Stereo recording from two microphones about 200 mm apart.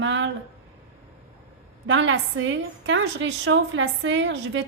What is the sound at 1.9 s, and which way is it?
A woman's voice, 75° right (ahead or behind).